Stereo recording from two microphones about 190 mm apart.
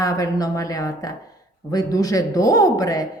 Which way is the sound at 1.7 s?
20° left (ahead or behind).